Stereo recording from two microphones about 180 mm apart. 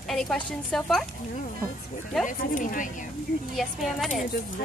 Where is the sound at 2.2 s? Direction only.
45° left (ahead or behind).